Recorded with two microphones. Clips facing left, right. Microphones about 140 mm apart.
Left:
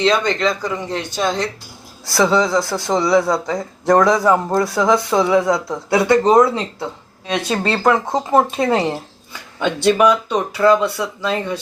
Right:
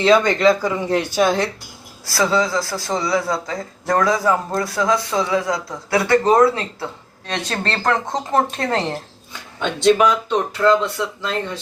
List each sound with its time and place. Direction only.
0.0 s speech: 5° right (ahead or behind)
2.0 s speech: 25° left (ahead or behind)
7.3 s speech: 10° left (ahead or behind)